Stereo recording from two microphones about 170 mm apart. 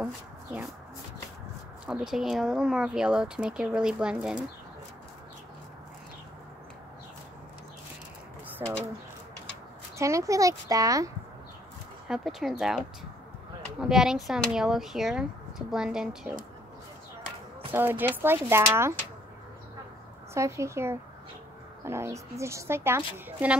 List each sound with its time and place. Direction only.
0.0 s speech: 10° right (ahead or behind)
1.9 s speech: 5° right (ahead or behind)
8.6 s speech: 20° right (ahead or behind)
9.9 s speech: 15° right (ahead or behind)
12.1 s speech: centre (ahead or behind)
17.7 s a woman's voice: 10° right (ahead or behind)
20.3 s a woman's voice: 15° right (ahead or behind)